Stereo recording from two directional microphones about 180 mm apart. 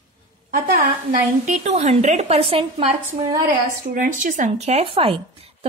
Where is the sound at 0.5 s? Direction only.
55° right (ahead or behind); by 2.7 s 30° right (ahead or behind).